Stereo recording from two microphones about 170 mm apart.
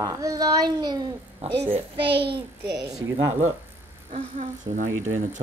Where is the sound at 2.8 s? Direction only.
20° right (ahead or behind).